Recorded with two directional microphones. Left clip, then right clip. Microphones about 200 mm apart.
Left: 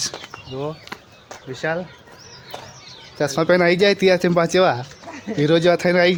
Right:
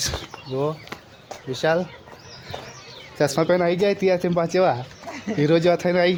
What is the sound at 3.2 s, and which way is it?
Speech, centre (ahead or behind).